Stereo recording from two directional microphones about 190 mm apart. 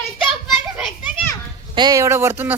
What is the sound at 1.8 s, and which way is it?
Speech, 20° right (ahead or behind).